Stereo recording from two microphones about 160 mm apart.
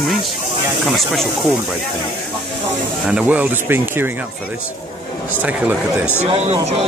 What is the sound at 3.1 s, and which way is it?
Speech, 10° right (ahead or behind).